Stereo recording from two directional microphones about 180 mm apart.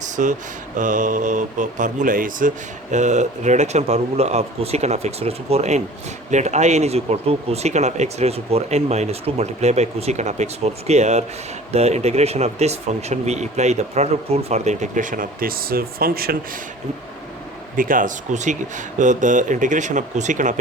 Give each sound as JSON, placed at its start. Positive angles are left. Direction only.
{"t": 0.2, "sound": "speech", "side_deg": -45}
{"t": 17.7, "sound": "speech", "side_deg": -50}